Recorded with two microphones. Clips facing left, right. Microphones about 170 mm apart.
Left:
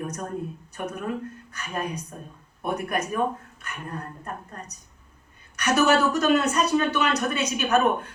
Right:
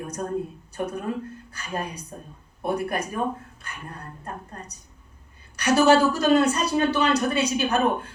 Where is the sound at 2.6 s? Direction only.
30° right (ahead or behind).